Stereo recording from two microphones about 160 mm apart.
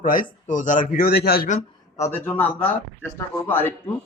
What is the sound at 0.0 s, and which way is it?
A man's voice, 55° left (ahead or behind).